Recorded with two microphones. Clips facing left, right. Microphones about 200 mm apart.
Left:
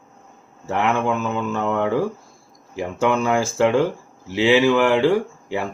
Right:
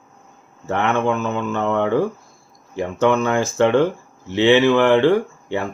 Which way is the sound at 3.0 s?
10° left (ahead or behind).